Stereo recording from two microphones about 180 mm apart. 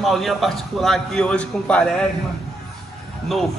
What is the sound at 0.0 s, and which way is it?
A man's voice, centre (ahead or behind).